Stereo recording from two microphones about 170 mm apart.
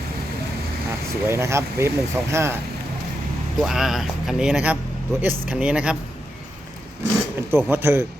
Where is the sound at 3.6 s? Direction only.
5° right (ahead or behind).